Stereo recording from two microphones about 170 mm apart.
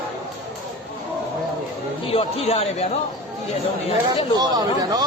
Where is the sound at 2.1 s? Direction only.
35° left (ahead or behind).